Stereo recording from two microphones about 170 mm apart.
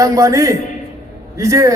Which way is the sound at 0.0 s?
20° right (ahead or behind).